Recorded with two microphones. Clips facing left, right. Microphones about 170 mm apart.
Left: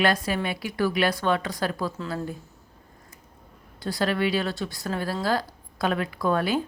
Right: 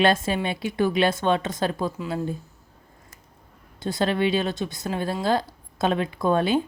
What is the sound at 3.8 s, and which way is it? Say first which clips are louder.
Speech: right 2 dB; 20° right (ahead or behind).